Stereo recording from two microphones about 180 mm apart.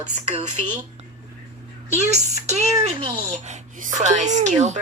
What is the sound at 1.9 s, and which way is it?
A woman's voice, 40° right (ahead or behind).